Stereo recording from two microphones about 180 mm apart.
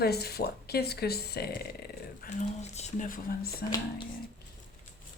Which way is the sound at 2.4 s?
40° left (ahead or behind).